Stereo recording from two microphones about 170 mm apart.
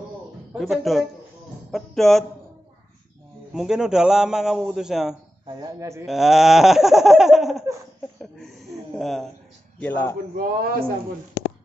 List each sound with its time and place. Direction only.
0.5 s a man's voice: centre (ahead or behind)
3.5 s a man's voice: 5° right (ahead or behind)
5.5 s speech: 25° right (ahead or behind)
6.0 s a man's voice: centre (ahead or behind)
8.2 s a sound: centre (ahead or behind)
9.8 s a man's voice: 10° left (ahead or behind)
10.3 s a man's voice: 60° right (ahead or behind)